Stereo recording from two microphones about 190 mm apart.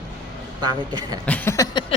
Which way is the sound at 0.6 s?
20° right (ahead or behind).